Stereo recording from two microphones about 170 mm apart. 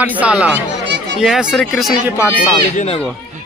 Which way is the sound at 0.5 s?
90° right.